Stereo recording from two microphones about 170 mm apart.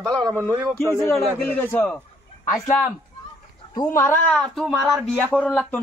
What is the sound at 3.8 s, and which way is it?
Speech, 20° left (ahead or behind).